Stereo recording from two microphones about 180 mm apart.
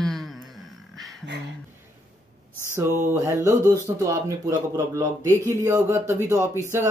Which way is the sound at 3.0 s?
15° right (ahead or behind).